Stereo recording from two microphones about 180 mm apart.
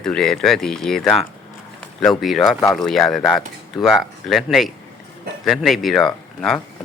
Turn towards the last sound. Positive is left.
turn(degrees=0)  # may be behind; listen again after turning